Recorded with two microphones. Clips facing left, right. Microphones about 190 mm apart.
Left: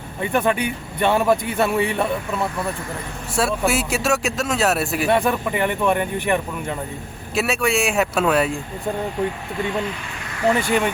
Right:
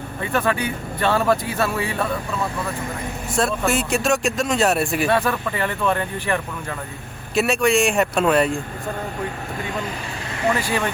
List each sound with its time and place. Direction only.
0.2 s speech: 20° left (ahead or behind)
3.3 s speech: 5° left (ahead or behind)
5.0 s a man's voice: 20° left (ahead or behind)
7.3 s speech: 5° left (ahead or behind)
10.5 s speech: 20° left (ahead or behind)